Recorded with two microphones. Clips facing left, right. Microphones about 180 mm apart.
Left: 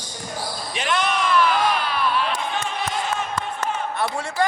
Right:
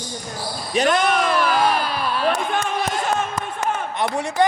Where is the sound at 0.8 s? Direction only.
45° right (ahead or behind).